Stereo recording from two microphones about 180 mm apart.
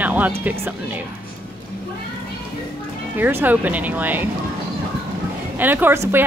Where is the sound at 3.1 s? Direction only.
10° right (ahead or behind).